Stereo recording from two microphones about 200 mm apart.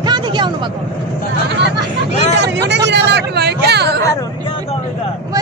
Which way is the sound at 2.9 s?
60° right (ahead or behind).